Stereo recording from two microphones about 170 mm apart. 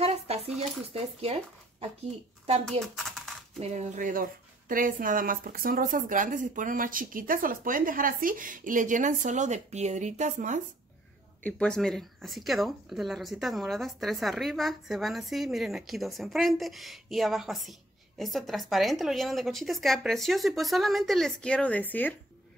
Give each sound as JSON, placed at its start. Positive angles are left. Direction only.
{"t": 0.0, "sound": "a sound", "side_deg": -35}
{"t": 0.8, "sound": "speech", "side_deg": -35}
{"t": 2.8, "sound": "speech", "side_deg": 0}
{"t": 3.5, "sound": "a woman's voice", "side_deg": -40}
{"t": 11.4, "sound": "speech", "side_deg": 5}